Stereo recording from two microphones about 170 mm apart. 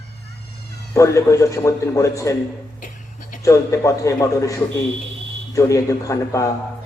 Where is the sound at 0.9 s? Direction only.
15° left (ahead or behind).